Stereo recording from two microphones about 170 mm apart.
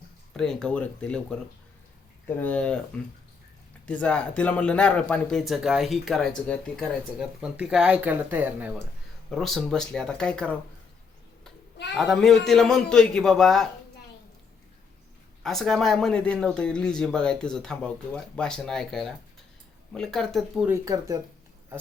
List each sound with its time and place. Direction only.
0.3 s speech: 5° left (ahead or behind)
4.0 s speech: 5° left (ahead or behind); by 8.8 s 10° right (ahead or behind)
9.3 s speech: centre (ahead or behind)
11.9 s speech: centre (ahead or behind)
15.4 s speech: centre (ahead or behind)
20.7 s speech: 15° right (ahead or behind)